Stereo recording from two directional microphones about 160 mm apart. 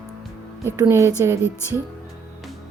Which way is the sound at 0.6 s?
15° right (ahead or behind).